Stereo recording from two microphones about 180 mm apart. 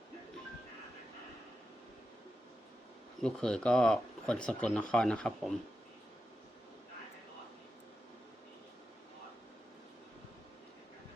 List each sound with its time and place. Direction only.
3.2 s speech: 5° left (ahead or behind)